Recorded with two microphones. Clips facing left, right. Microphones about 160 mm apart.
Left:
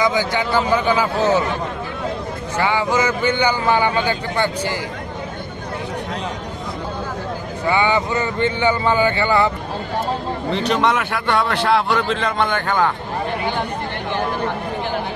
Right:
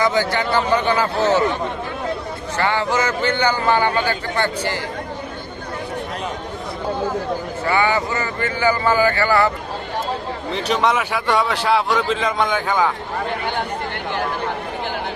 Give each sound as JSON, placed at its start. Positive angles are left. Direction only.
{"t": 0.0, "sound": "a man's voice", "side_deg": 15}
{"t": 2.5, "sound": "a man's voice", "side_deg": 15}
{"t": 7.6, "sound": "speech", "side_deg": 20}
{"t": 10.5, "sound": "a man's voice", "side_deg": -5}